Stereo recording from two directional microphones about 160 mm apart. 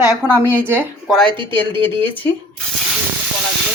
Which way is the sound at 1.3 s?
30° right (ahead or behind).